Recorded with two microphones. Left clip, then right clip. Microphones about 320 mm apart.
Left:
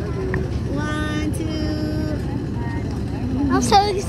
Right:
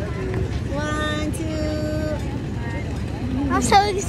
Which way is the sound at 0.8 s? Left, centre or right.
Centre.